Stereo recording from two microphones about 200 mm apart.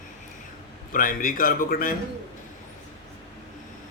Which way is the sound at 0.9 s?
45° left (ahead or behind).